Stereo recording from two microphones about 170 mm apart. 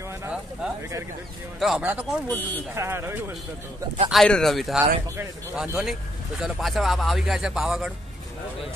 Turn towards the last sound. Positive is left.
turn(degrees=-5)  # may be behind; listen again after turning